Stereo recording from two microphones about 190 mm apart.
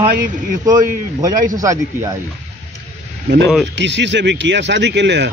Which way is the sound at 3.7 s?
70° right (ahead or behind).